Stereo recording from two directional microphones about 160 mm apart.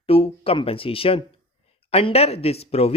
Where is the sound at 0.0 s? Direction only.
40° left (ahead or behind).